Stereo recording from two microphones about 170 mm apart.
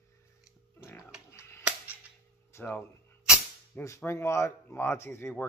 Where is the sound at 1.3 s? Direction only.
15° left (ahead or behind).